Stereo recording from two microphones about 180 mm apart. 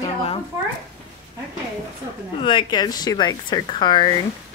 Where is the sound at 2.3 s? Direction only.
25° left (ahead or behind).